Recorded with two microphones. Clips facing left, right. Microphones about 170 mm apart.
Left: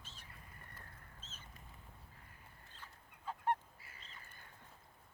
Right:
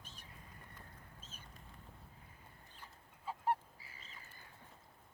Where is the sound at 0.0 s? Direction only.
15° right (ahead or behind).